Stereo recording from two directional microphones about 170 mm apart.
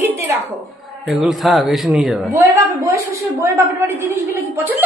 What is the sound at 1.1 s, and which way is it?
A man's voice, centre (ahead or behind).